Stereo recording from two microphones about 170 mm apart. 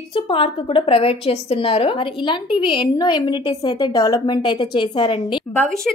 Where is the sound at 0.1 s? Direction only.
30° left (ahead or behind).